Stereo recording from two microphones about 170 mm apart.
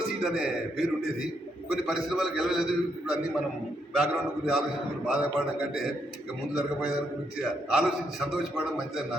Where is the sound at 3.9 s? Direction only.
5° right (ahead or behind).